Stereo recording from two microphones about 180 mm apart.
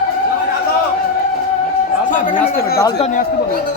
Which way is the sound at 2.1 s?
50° left (ahead or behind).